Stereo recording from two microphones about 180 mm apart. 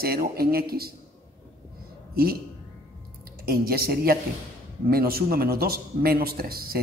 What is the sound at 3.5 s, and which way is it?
Speech, 60° right (ahead or behind).